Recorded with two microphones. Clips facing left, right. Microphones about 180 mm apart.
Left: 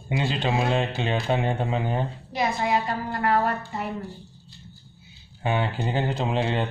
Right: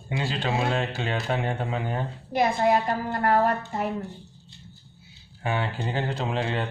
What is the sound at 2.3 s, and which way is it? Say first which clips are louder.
A woman's voice: right 3 dB; 55° right (ahead or behind).